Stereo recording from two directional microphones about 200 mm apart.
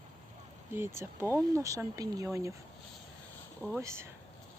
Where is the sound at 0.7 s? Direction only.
10° right (ahead or behind).